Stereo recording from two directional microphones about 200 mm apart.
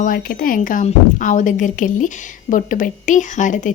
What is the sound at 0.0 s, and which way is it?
A woman's voice, 45° left (ahead or behind).